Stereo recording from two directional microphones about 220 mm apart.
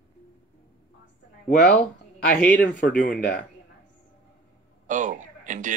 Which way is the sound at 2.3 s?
5° left (ahead or behind).